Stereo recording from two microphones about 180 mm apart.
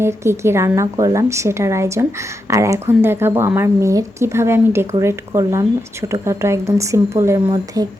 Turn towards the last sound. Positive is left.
turn(degrees=-20)  # may be behind; listen again after turning